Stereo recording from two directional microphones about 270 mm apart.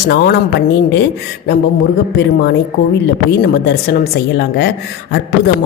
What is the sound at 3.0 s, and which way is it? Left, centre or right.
Speech, left.